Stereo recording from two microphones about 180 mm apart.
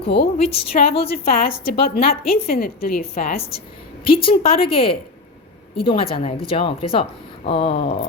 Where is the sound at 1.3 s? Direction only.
55° left (ahead or behind).